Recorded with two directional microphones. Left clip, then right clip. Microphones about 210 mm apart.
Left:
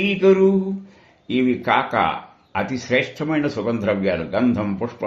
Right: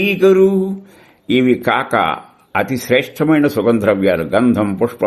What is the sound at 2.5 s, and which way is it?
Speech, 45° right (ahead or behind).